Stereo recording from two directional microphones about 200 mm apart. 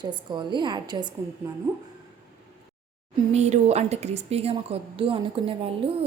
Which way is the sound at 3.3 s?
35° right (ahead or behind).